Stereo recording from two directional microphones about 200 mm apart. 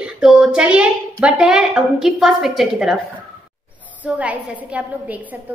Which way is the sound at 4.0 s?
5° right (ahead or behind).